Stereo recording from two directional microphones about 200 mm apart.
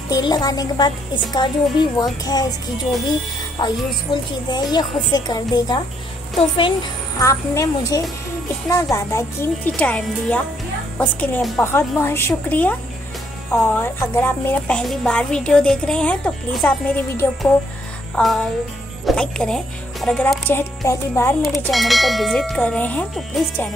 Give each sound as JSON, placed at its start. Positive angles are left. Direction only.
{"t": 0.1, "sound": "a woman's voice", "side_deg": 20}
{"t": 3.5, "sound": "a woman's voice", "side_deg": 20}
{"t": 21.4, "sound": "speech", "side_deg": 0}